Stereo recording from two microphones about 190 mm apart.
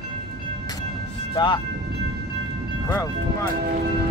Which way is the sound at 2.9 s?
15° left (ahead or behind).